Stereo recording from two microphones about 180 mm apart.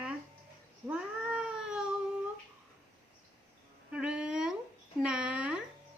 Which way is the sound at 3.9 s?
5° right (ahead or behind).